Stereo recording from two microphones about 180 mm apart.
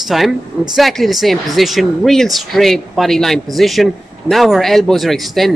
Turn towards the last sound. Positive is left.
turn(degrees=0)  # may be behind; listen again after turning